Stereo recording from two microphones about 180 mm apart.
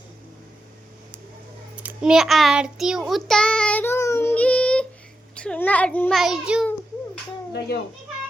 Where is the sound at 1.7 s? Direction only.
5° right (ahead or behind).